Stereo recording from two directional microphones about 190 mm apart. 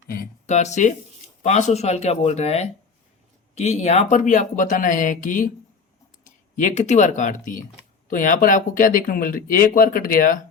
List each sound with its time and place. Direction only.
0.1 s a sound: 45° left (ahead or behind)
1.4 s speech: 40° left (ahead or behind)
6.6 s speech: 40° left (ahead or behind)